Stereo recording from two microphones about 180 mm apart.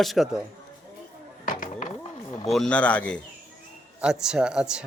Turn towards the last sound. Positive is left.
turn(degrees=-5)  # may be behind; listen again after turning